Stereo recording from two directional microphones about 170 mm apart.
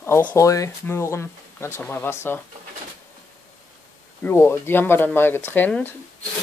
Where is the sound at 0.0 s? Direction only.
10° left (ahead or behind).